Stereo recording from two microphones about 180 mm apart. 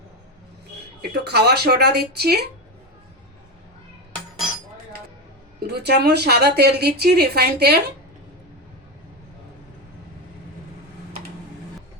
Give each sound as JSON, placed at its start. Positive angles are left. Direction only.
{"t": 1.1, "sound": "a woman's voice", "side_deg": -65}
{"t": 5.5, "sound": "a woman's voice", "side_deg": -65}